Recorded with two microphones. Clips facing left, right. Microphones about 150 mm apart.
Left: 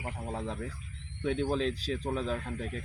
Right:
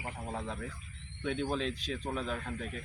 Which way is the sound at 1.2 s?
35° left (ahead or behind).